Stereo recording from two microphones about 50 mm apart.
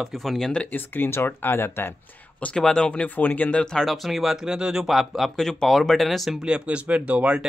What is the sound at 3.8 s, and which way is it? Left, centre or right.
Speech, centre.